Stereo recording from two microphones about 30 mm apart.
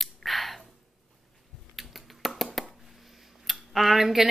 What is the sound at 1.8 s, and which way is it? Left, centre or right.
Finger snapping, centre.